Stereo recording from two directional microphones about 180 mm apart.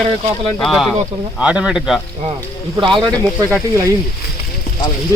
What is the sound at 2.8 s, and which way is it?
Speech, 25° right (ahead or behind).